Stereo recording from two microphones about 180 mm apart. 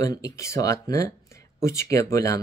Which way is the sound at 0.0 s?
15° left (ahead or behind).